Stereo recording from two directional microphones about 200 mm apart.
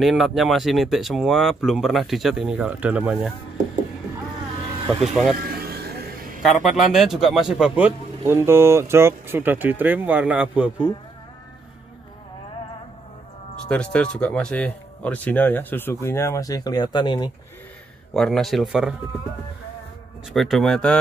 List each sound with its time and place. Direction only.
0.0 s speech: centre (ahead or behind)
5.0 s speech: centre (ahead or behind)
5.4 s a sound: 50° right (ahead or behind)
6.6 s speech: centre (ahead or behind)
13.7 s speech: 5° left (ahead or behind); by 17.3 s 20° left (ahead or behind)
18.1 s speech: centre (ahead or behind)
20.3 s speech: centre (ahead or behind)